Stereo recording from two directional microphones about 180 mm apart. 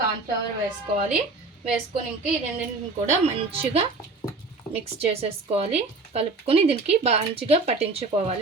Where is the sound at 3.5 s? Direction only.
35° right (ahead or behind).